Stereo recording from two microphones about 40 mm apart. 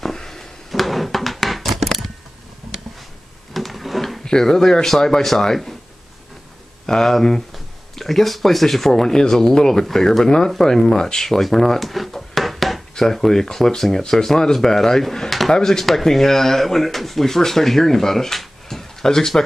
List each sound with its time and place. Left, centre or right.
0.0 s a sound: centre
3.5 s drawer open or close: centre
4.2 s speech: centre
6.9 s speech: centre
11.4 s drawer open or close: centre
12.9 s speech: centre
15.5 s speech: centre
15.8 s speech: centre